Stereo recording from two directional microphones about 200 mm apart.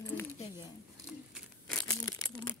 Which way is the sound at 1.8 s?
20° left (ahead or behind).